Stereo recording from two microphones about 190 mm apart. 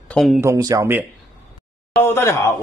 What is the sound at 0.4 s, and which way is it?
Speech, 15° right (ahead or behind).